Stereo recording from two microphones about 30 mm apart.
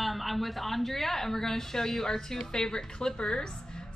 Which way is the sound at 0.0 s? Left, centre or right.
Centre.